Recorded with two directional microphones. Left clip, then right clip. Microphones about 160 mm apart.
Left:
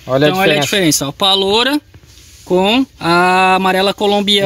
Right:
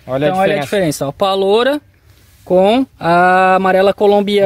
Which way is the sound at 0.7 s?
45° right (ahead or behind).